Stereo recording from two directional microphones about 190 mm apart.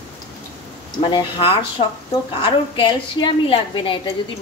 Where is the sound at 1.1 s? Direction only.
25° left (ahead or behind).